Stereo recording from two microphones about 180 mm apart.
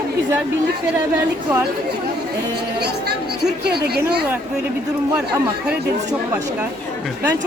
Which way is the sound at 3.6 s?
65° right (ahead or behind).